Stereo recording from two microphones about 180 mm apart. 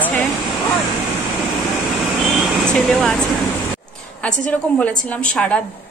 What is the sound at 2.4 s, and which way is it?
A woman's voice, centre (ahead or behind).